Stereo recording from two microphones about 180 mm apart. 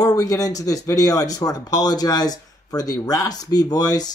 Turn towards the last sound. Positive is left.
turn(degrees=20)  # may be behind; listen again after turning